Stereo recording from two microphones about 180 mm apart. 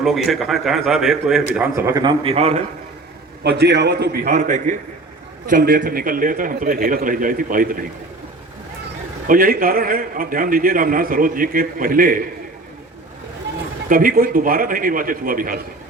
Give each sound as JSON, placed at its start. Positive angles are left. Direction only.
{"t": 0.0, "sound": "a man's voice", "side_deg": 0}
{"t": 1.5, "sound": "a man's voice", "side_deg": -15}
{"t": 3.4, "sound": "a man's voice", "side_deg": -70}
{"t": 4.3, "sound": "a man's voice", "side_deg": -40}
{"t": 9.2, "sound": "a man's voice", "side_deg": -50}
{"t": 13.8, "sound": "a man's voice", "side_deg": -50}